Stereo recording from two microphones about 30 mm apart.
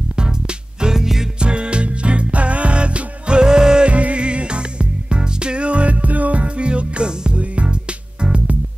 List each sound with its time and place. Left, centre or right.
0.9 s music: centre
1.4 s music: right
3.4 s music: right
3.8 s music: right
6.4 s music: right